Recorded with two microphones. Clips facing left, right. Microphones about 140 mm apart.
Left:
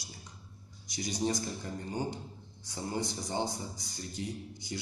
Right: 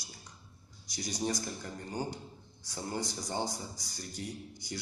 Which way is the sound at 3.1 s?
20° left (ahead or behind).